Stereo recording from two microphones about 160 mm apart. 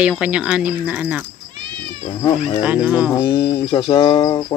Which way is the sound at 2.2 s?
35° left (ahead or behind).